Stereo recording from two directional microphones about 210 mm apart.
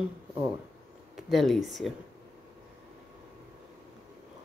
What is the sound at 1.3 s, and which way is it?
Speech, centre (ahead or behind).